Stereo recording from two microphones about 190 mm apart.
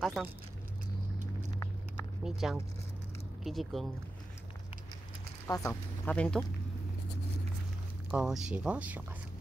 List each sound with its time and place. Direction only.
0.0 s speech: centre (ahead or behind)
1.5 s a sound: 15° left (ahead or behind)
2.2 s speech: 5° right (ahead or behind)
5.5 s speech: 15° left (ahead or behind)
6.0 s speech: 5° left (ahead or behind)
8.1 s speech: 5° right (ahead or behind)